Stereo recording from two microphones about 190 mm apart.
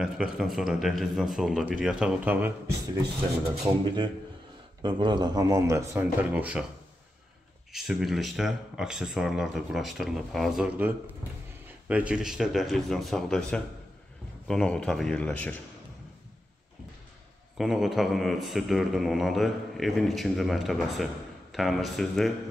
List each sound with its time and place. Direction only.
0.0 s a man's voice: centre (ahead or behind)
3.8 s a man's voice: 25° right (ahead or behind); by 6.6 s 5° right (ahead or behind)
7.7 s a man's voice: centre (ahead or behind)
17.6 s a man's voice: centre (ahead or behind)